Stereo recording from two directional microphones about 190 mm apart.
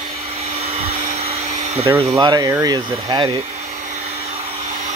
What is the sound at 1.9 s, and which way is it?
Speech, 20° right (ahead or behind).